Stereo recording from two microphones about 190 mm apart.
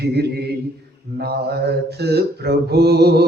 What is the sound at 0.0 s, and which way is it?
Mantra, 60° right (ahead or behind).